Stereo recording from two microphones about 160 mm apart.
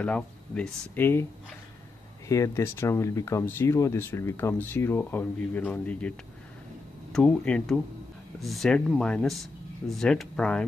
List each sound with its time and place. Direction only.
0.0 s speech: 5° left (ahead or behind)
2.2 s speech: 20° left (ahead or behind)